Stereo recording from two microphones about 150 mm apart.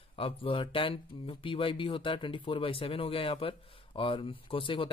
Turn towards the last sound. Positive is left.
turn(degrees=35)  # may be behind; listen again after turning